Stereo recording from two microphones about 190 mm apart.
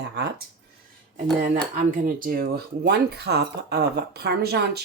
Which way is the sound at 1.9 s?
45° right (ahead or behind).